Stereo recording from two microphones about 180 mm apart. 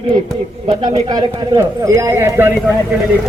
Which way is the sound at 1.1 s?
20° right (ahead or behind).